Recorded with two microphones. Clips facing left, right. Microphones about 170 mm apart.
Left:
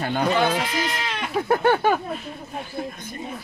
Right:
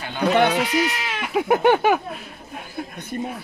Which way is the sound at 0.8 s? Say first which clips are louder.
Right 1 dB; 5° right (ahead or behind).